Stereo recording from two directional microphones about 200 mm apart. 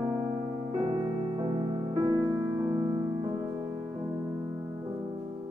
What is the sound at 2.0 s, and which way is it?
Music, 20° right (ahead or behind).